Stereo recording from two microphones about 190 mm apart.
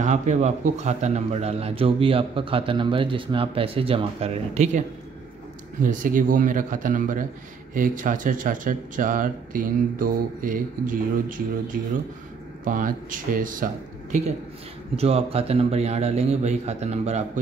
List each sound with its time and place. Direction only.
0.0 s a man's voice: 40° right (ahead or behind)
15.0 s a man's voice: 30° right (ahead or behind)